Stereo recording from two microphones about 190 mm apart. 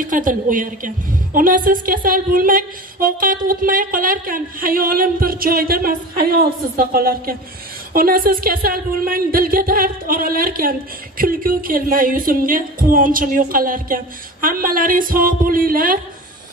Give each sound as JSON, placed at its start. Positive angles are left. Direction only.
{"t": 0.0, "sound": "speech", "side_deg": -45}